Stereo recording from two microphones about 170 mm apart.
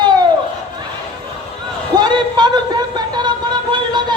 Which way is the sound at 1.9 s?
25° right (ahead or behind).